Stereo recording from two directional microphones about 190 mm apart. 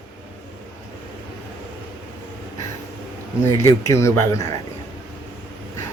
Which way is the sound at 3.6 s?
15° left (ahead or behind).